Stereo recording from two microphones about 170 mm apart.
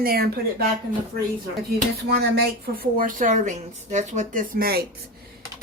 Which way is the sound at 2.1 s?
65° right (ahead or behind).